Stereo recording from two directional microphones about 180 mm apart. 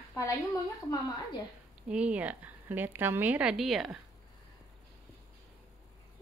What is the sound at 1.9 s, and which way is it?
A woman's voice, 5° right (ahead or behind).